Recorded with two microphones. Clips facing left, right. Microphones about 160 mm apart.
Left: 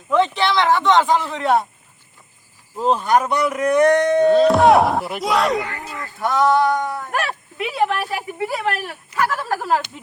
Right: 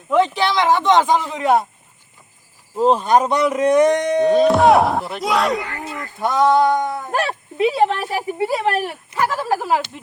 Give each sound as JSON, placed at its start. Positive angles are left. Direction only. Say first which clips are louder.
{"t": 0.1, "sound": "speech", "louder": "right 1 dB", "side_deg": -10}
{"t": 2.7, "sound": "speech", "louder": "right 3 dB", "side_deg": -20}
{"t": 4.4, "sound": "speech", "louder": "even", "side_deg": 0}
{"t": 5.8, "sound": "speech", "louder": "right 2 dB", "side_deg": -20}